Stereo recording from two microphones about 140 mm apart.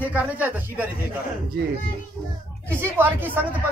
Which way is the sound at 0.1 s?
10° right (ahead or behind).